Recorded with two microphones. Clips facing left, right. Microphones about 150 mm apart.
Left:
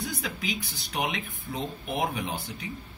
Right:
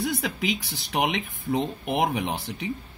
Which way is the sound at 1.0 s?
90° right.